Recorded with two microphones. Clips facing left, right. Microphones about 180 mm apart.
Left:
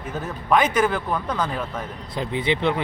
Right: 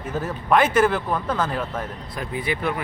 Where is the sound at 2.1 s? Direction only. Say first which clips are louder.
Left 4 dB; 25° left (ahead or behind).